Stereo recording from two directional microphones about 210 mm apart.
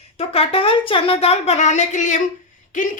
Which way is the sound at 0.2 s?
25° left (ahead or behind).